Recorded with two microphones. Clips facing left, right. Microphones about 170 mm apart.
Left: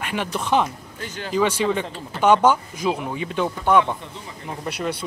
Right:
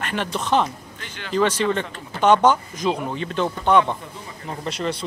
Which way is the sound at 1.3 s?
10° left (ahead or behind).